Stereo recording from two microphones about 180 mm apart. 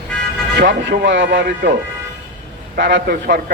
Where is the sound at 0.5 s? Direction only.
75° right (ahead or behind).